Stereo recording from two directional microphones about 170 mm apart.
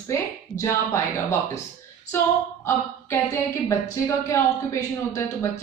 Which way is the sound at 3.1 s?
15° left (ahead or behind).